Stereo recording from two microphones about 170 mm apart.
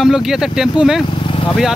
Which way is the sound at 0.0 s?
Centre (ahead or behind).